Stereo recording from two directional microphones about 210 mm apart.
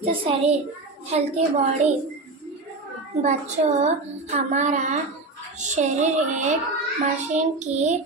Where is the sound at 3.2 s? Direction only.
35° right (ahead or behind).